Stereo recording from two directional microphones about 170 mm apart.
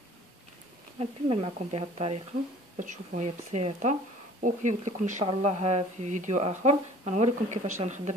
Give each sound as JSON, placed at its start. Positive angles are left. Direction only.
{"t": 0.9, "sound": "speech", "side_deg": -35}
{"t": 2.8, "sound": "speech", "side_deg": -45}